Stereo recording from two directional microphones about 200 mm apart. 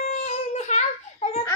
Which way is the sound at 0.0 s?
35° left (ahead or behind).